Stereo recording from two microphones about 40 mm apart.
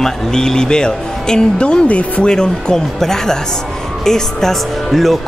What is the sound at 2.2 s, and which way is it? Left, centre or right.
Speech, centre.